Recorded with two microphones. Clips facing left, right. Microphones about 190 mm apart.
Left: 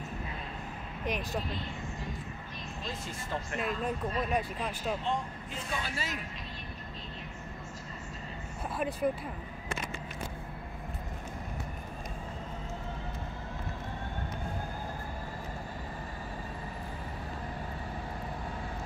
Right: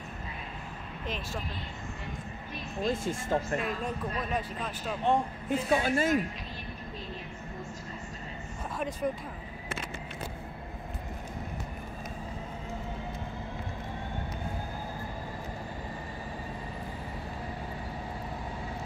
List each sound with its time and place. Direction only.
1.0 s speech: 15° left (ahead or behind)
2.8 s speech: 50° right (ahead or behind)
3.6 s speech: 10° left (ahead or behind)
5.0 s speech: 55° right (ahead or behind)
8.7 s speech: 5° left (ahead or behind)